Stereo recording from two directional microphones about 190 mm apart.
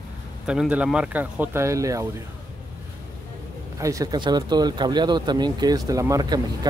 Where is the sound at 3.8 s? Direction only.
15° right (ahead or behind).